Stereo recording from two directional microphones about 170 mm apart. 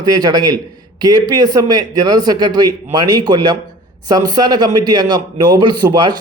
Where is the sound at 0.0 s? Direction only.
25° right (ahead or behind).